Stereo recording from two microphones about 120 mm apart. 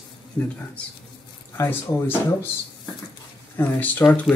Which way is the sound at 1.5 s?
20° left (ahead or behind).